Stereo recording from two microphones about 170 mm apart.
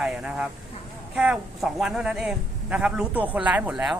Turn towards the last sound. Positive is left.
turn(degrees=-5)  # may be behind; listen again after turning